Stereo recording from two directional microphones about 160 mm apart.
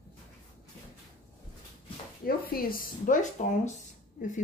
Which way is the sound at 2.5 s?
65° left (ahead or behind).